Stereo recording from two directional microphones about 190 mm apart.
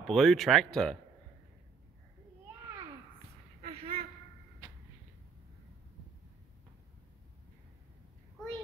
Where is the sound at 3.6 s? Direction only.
30° right (ahead or behind).